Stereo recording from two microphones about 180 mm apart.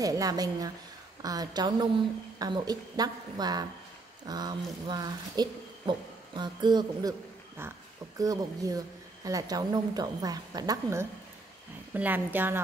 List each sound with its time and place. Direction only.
0.0 s a woman's voice: 20° right (ahead or behind)